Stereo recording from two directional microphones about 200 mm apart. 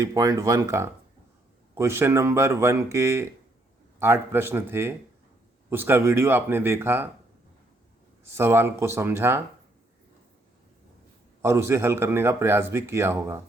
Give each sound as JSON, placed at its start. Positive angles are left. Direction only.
{"t": 0.0, "sound": "speech", "side_deg": -15}
{"t": 8.4, "sound": "speech", "side_deg": -10}
{"t": 11.4, "sound": "speech", "side_deg": -15}